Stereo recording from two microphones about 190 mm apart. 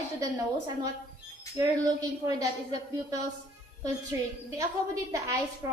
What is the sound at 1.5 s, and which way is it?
Speech, 20° right (ahead or behind).